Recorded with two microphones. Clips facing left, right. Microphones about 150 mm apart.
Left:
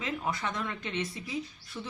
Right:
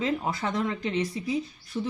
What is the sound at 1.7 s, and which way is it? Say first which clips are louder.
Speech: right 10 dB; 30° right (ahead or behind).